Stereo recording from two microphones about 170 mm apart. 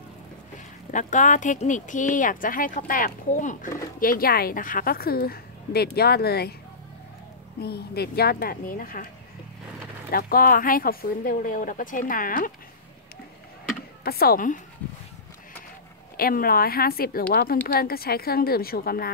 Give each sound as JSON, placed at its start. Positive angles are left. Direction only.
{"t": 0.9, "sound": "a woman's voice", "side_deg": 45}
{"t": 7.6, "sound": "a woman's voice", "side_deg": 70}
{"t": 10.1, "sound": "a woman's voice", "side_deg": 60}
{"t": 14.0, "sound": "a woman's voice", "side_deg": 65}
{"t": 16.2, "sound": "a woman's voice", "side_deg": 60}